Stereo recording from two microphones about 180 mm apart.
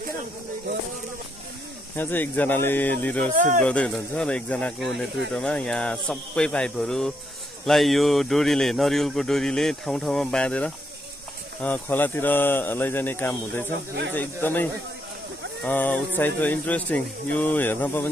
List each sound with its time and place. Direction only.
2.0 s a man's voice: 10° left (ahead or behind)
3.3 s speech: 45° right (ahead or behind)
3.6 s a man's voice: 5° left (ahead or behind)